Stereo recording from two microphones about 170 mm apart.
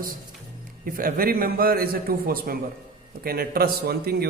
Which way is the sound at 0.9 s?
55° right (ahead or behind).